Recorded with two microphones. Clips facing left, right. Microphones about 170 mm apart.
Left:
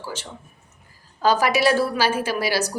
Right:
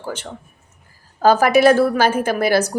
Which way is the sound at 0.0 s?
55° right (ahead or behind).